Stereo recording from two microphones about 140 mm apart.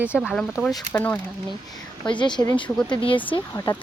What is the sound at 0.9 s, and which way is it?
Speech, 15° left (ahead or behind).